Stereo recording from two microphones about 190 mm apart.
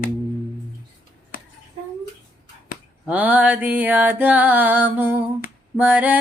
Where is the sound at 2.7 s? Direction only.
45° left (ahead or behind).